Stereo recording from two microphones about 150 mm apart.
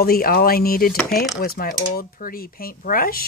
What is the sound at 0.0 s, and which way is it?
Speech, 80° left.